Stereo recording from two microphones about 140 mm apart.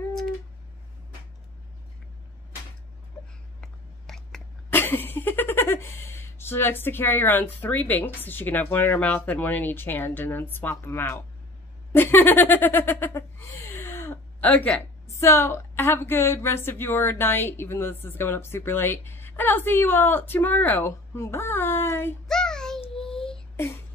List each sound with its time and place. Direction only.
3.6 s a sound: 5° left (ahead or behind)
4.7 s speech: 15° left (ahead or behind)
11.9 s laughter: 15° left (ahead or behind)
22.3 s child singing: 5° left (ahead or behind)